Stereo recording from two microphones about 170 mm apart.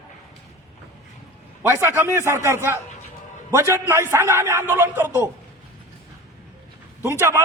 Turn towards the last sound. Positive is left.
turn(degrees=-15)  # may be behind; listen again after turning